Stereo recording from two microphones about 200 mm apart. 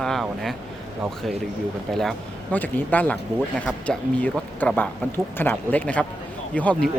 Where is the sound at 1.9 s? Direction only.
Centre (ahead or behind).